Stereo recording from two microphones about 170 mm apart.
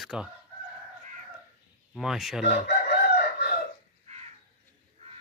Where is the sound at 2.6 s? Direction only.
70° left (ahead or behind).